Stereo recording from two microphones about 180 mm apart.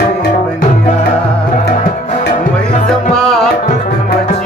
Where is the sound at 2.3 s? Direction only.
45° left (ahead or behind).